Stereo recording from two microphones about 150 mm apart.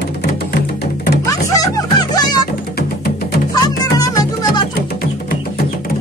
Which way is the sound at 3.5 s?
25° left (ahead or behind).